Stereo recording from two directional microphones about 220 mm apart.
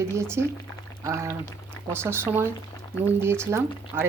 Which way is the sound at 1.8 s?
15° left (ahead or behind).